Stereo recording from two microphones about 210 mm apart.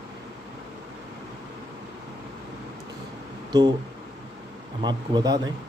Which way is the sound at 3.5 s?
20° right (ahead or behind).